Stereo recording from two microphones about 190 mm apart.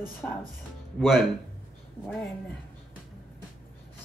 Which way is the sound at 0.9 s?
Centre (ahead or behind).